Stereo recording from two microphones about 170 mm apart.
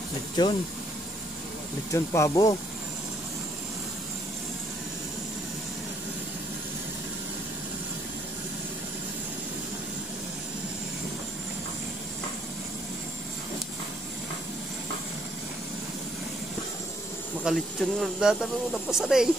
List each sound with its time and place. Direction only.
0.4 s speech: 25° left (ahead or behind)
1.9 s speech: 20° left (ahead or behind)
17.4 s speech: centre (ahead or behind)